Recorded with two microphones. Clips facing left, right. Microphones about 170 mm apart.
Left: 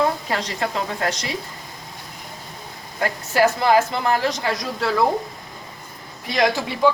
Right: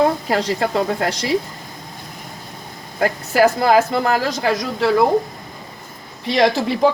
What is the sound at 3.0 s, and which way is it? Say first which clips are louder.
A woman's voice: right 4 dB; 40° right (ahead or behind).